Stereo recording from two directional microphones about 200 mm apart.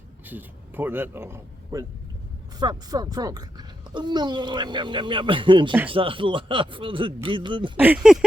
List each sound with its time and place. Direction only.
0.3 s a child's voice: 10° right (ahead or behind)
7.8 s speech: 5° right (ahead or behind)